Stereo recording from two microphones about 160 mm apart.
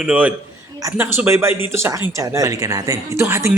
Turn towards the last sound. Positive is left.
turn(degrees=-15)  # may be behind; listen again after turning